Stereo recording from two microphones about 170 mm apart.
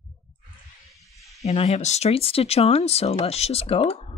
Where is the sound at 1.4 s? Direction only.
40° left (ahead or behind).